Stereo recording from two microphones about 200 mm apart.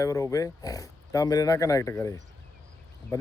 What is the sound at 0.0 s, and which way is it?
Speech, 15° left (ahead or behind).